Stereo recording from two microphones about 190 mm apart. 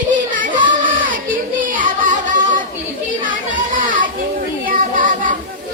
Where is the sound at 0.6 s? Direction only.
25° right (ahead or behind).